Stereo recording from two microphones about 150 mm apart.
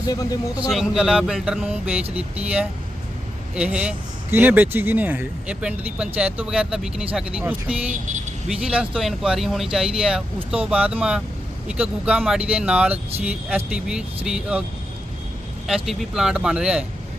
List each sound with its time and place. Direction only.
0.1 s a man's voice: 25° left (ahead or behind)
0.5 s speech: 5° right (ahead or behind)
3.5 s a man's voice: 5° right (ahead or behind)
7.9 s speech: 55° right (ahead or behind)
8.4 s a man's voice: 5° right (ahead or behind)
15.6 s speech: centre (ahead or behind)